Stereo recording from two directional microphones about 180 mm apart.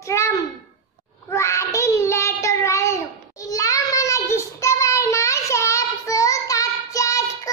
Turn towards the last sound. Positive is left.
turn(degrees=20)  # may be behind; listen again after turning